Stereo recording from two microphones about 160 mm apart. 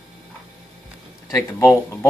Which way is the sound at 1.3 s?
15° left (ahead or behind).